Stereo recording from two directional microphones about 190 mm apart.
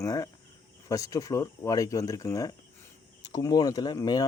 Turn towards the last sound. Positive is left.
turn(degrees=20)  # may be behind; listen again after turning